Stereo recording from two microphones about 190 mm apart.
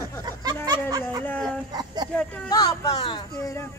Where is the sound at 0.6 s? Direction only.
20° right (ahead or behind).